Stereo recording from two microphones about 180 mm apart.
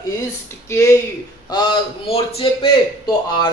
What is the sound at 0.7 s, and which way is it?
A man's voice, 15° left (ahead or behind).